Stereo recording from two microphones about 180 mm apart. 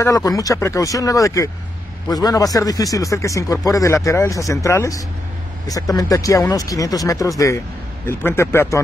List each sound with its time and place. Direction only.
0.0 s a man's voice: 20° left (ahead or behind)